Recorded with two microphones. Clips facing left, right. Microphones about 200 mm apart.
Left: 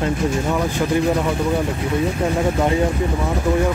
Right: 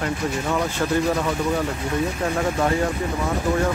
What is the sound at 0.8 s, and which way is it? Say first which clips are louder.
Speech: left 3 dB; 10° left (ahead or behind).